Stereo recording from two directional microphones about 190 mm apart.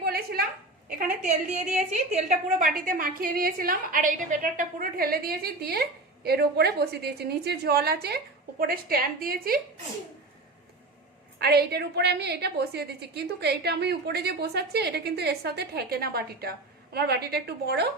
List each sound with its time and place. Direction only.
0.0 s a sound: 55° right (ahead or behind)
1.7 s a woman's voice: 40° right (ahead or behind)
11.3 s a woman's voice: 55° right (ahead or behind)